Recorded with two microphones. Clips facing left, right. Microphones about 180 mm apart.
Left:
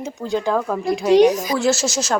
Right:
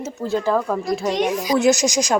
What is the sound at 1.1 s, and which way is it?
Speech, 40° left (ahead or behind).